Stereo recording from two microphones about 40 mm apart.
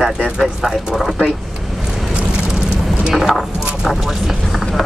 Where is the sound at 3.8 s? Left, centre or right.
Centre.